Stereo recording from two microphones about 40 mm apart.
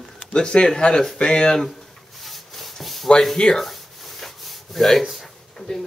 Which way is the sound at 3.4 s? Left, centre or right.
Left.